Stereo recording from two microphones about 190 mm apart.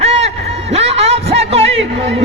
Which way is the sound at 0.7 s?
35° right (ahead or behind).